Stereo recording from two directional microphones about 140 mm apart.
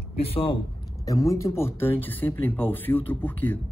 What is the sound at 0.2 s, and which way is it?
Speech, 40° left (ahead or behind).